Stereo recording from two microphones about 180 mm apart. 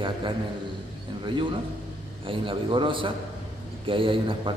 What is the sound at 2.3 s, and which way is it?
A man's voice, 30° right (ahead or behind).